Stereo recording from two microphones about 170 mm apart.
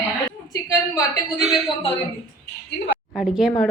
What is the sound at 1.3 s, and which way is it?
Speech, centre (ahead or behind).